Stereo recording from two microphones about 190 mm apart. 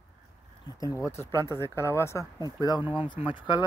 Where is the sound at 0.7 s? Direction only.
15° left (ahead or behind).